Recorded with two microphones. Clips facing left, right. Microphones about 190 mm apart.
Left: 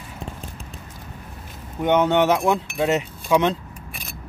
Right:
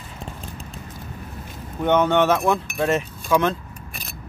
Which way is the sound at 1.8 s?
15° left (ahead or behind).